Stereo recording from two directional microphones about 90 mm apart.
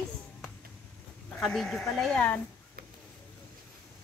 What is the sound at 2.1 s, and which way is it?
Speech, 15° left (ahead or behind).